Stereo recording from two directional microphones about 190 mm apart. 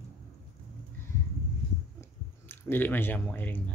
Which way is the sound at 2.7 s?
10° left (ahead or behind).